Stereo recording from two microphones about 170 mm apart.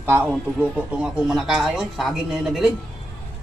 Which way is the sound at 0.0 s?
15° right (ahead or behind).